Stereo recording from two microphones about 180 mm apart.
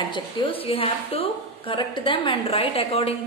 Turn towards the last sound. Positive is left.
turn(degrees=35)  # may be behind; listen again after turning